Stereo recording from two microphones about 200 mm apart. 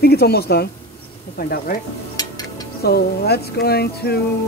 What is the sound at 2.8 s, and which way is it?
Speech, 50° left (ahead or behind).